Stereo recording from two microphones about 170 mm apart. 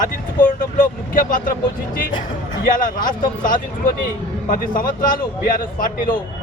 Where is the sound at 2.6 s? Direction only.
55° left (ahead or behind).